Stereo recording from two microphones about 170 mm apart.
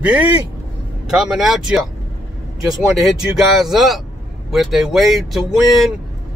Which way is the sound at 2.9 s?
Centre (ahead or behind).